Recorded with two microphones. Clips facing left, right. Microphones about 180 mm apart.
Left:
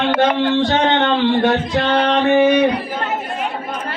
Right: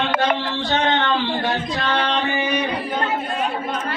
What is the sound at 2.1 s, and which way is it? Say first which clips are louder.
Music: left 9 dB; 60° left (ahead or behind).